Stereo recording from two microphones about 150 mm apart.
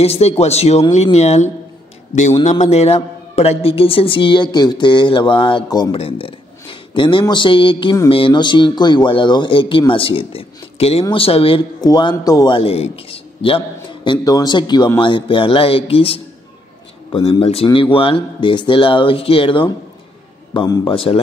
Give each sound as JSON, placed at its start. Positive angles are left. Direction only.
{"t": 0.0, "sound": "speech", "side_deg": 45}
{"t": 2.6, "sound": "speech", "side_deg": 45}
{"t": 11.8, "sound": "a man's voice", "side_deg": 30}
{"t": 12.5, "sound": "a man's voice", "side_deg": 40}
{"t": 17.4, "sound": "a man's voice", "side_deg": 40}